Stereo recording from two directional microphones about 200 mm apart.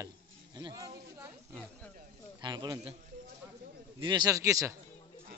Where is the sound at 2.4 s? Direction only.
20° right (ahead or behind).